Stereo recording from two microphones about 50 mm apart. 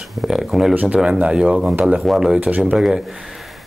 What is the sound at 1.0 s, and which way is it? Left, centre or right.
Speech, right.